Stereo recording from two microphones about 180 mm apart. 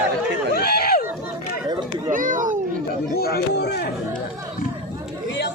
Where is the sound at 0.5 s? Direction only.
60° left (ahead or behind).